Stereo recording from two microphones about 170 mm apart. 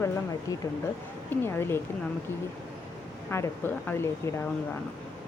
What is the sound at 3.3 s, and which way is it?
Speech, 15° left (ahead or behind).